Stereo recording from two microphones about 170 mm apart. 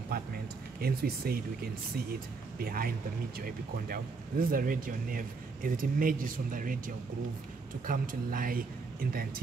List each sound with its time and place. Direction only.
0.1 s a sound: 60° right (ahead or behind)
0.7 s speech: 65° right (ahead or behind)
7.8 s speech: 55° right (ahead or behind)